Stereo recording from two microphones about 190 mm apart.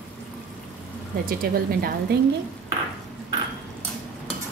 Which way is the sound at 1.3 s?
50° right (ahead or behind).